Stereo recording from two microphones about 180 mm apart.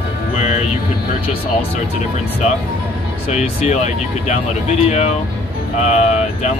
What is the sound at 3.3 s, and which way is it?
Speech, 40° left (ahead or behind).